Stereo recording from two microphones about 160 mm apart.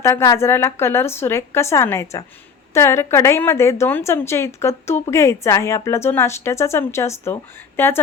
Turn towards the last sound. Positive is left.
turn(degrees=15)  # may be behind; listen again after turning